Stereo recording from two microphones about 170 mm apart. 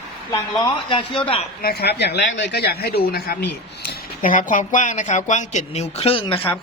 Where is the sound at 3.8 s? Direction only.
50° left (ahead or behind).